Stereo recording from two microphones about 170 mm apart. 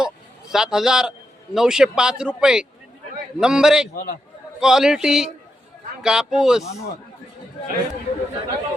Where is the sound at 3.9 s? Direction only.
60° left (ahead or behind).